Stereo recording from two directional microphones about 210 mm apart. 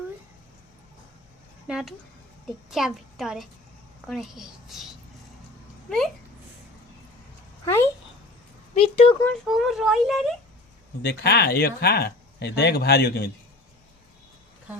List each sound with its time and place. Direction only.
1.6 s speech: centre (ahead or behind)
7.6 s a sound: 10° left (ahead or behind)
8.7 s speech: 30° left (ahead or behind)
9.2 s speech: 5° left (ahead or behind)
11.0 s speech: 50° left (ahead or behind)